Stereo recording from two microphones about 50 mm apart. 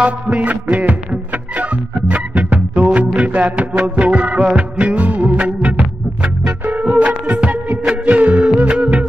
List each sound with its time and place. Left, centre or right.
0.0 s music: right